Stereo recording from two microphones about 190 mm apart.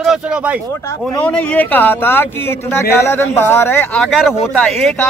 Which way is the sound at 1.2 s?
5° left (ahead or behind).